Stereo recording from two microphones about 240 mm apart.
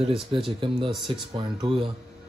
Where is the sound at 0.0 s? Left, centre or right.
Right.